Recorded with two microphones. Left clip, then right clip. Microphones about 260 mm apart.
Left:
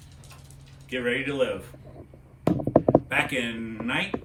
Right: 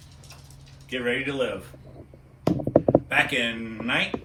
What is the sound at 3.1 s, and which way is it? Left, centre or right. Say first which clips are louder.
Speech: right 3 dB; centre.